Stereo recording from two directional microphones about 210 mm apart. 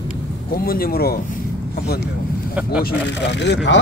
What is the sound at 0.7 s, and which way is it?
Speech, 45° left (ahead or behind).